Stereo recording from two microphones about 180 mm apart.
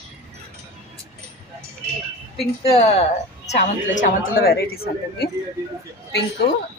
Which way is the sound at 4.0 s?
55° left (ahead or behind).